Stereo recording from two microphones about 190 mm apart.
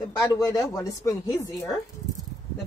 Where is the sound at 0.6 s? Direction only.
20° left (ahead or behind).